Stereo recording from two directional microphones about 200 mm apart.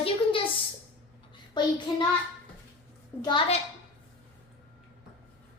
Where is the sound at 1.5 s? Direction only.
25° left (ahead or behind).